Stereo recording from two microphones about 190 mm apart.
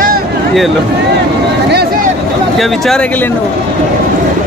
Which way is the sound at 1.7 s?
55° right (ahead or behind).